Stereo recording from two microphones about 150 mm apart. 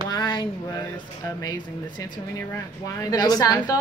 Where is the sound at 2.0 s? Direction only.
25° left (ahead or behind).